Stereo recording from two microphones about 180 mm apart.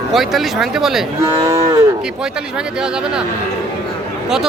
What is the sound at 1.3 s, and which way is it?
Cattle, 15° right (ahead or behind).